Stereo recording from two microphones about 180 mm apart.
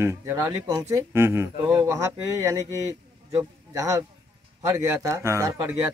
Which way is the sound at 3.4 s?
15° right (ahead or behind).